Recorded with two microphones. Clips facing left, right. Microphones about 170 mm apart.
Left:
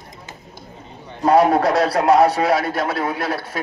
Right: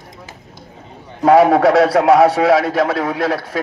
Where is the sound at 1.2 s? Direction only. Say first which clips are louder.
Right 4 dB; 90° right.